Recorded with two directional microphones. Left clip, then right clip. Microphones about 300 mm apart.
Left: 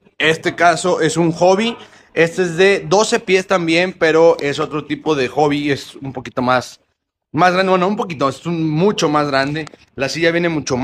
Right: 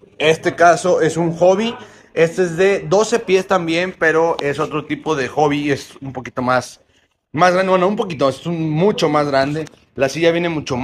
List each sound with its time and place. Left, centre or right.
0.2 s speech: centre